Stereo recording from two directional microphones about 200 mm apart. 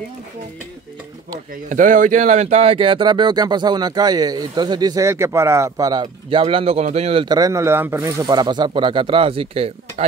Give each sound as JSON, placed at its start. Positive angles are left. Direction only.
{"t": 1.7, "sound": "speech", "side_deg": -40}